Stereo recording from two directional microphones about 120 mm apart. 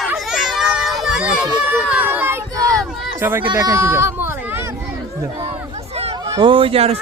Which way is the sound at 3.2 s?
20° right (ahead or behind).